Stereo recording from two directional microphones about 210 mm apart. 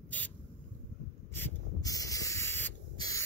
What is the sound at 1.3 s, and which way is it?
Hiss, 15° left (ahead or behind).